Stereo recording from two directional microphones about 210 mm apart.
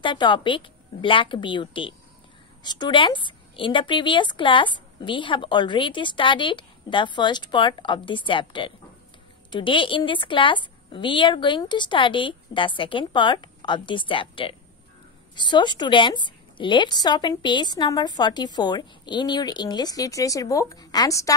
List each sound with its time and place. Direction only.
0.0 s a woman's voice: 20° left (ahead or behind)